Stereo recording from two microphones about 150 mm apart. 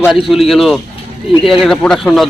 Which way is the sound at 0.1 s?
Centre (ahead or behind).